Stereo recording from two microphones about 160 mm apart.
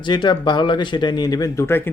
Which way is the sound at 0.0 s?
30° left (ahead or behind).